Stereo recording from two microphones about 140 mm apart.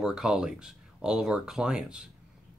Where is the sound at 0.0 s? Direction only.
5° right (ahead or behind).